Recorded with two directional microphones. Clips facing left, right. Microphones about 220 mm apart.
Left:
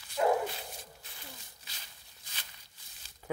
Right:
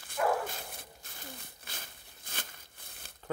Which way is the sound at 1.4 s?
55° right (ahead or behind).